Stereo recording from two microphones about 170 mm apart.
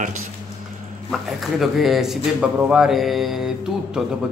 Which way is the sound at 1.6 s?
Centre (ahead or behind).